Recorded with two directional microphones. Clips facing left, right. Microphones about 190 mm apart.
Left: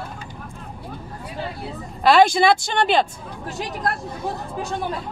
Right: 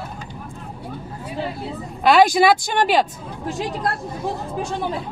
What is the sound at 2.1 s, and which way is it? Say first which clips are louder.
Speech: right 1 dB; 5° right (ahead or behind).